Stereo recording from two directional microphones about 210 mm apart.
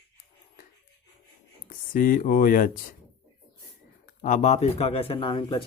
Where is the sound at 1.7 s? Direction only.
40° left (ahead or behind).